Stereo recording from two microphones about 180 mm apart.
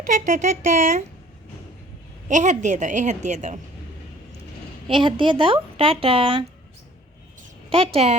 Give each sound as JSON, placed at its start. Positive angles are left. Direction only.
{"t": 0.0, "sound": "speech", "side_deg": -40}
{"t": 2.2, "sound": "a woman's voice", "side_deg": -45}
{"t": 4.9, "sound": "a woman's voice", "side_deg": -25}
{"t": 8.0, "sound": "speech", "side_deg": -35}